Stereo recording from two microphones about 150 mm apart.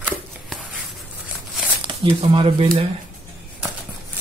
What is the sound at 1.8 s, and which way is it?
Speech, 35° right (ahead or behind).